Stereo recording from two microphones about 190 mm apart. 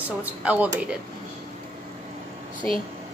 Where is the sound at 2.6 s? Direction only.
10° left (ahead or behind).